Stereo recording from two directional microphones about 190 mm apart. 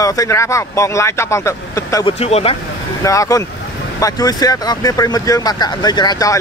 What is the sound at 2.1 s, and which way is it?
Speech, 35° left (ahead or behind).